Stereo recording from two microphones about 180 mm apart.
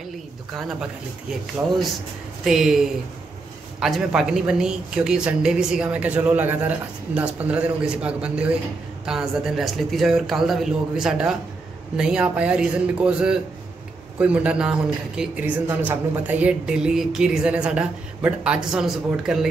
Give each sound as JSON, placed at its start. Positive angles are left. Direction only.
{"t": 2.4, "sound": "a man's voice", "side_deg": -5}